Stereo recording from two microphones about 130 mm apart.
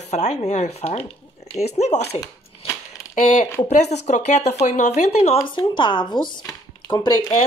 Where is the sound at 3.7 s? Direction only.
65° left (ahead or behind).